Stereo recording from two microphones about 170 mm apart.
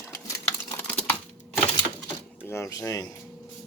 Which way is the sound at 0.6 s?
15° left (ahead or behind).